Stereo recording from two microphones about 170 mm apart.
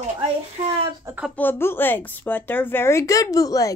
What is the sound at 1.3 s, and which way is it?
A woman's voice, 10° left (ahead or behind).